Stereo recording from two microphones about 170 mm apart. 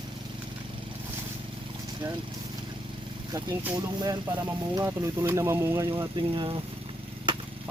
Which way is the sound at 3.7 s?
25° right (ahead or behind).